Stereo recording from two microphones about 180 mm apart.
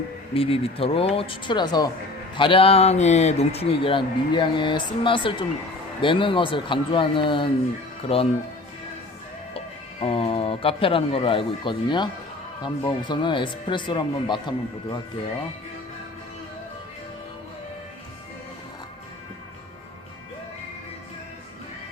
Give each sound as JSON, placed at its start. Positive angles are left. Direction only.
{"t": 0.3, "sound": "a man's voice", "side_deg": 30}
{"t": 9.6, "sound": "a man's voice", "side_deg": 30}